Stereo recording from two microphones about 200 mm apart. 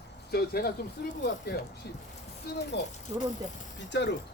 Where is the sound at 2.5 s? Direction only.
50° left (ahead or behind).